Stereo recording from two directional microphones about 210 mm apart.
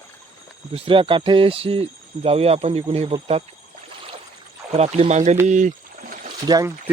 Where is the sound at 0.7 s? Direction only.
25° right (ahead or behind).